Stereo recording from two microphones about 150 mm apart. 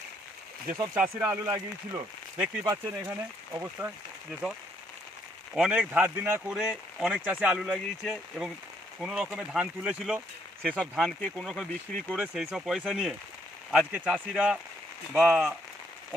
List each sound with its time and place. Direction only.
0.9 s speech: 10° right (ahead or behind); by 3.1 s 30° right (ahead or behind)
3.5 s speech: 15° right (ahead or behind)
5.5 s speech: 5° right (ahead or behind)
10.6 s speech: 5° left (ahead or behind)